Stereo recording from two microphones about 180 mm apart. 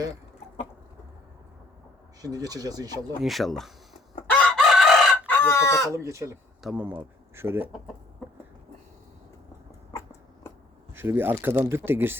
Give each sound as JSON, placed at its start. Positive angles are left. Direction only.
{"t": 2.2, "sound": "speech", "side_deg": -20}
{"t": 3.2, "sound": "speech", "side_deg": 0}
{"t": 4.3, "sound": "chicken", "side_deg": 5}
{"t": 5.2, "sound": "chicken", "side_deg": 10}
{"t": 5.9, "sound": "speech", "side_deg": -15}
{"t": 9.9, "sound": "a sound", "side_deg": 15}
{"t": 10.9, "sound": "speech", "side_deg": -10}